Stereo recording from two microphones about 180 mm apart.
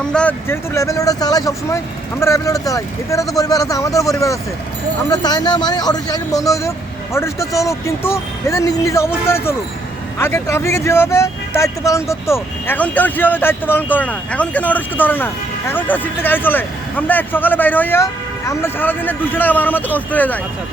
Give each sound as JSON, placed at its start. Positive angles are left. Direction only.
{"t": 0.0, "sound": "speech", "side_deg": 5}